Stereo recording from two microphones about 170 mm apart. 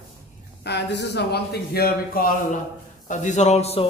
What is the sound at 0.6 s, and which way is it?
A man's voice, 85° left.